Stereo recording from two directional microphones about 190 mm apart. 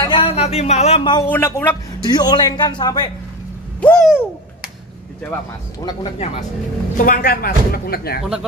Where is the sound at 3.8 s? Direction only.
5° left (ahead or behind).